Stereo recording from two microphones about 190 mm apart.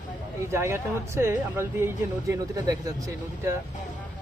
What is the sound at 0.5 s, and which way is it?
Speech, 15° right (ahead or behind).